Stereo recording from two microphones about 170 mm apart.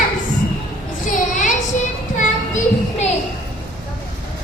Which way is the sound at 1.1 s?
50° left (ahead or behind).